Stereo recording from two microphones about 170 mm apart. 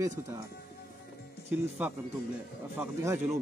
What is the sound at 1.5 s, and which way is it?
Speech, 10° right (ahead or behind).